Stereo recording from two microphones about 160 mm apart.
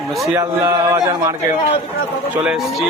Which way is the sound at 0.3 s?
20° right (ahead or behind).